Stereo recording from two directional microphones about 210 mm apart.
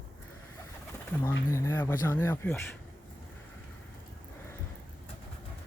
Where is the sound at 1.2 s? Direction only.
10° left (ahead or behind).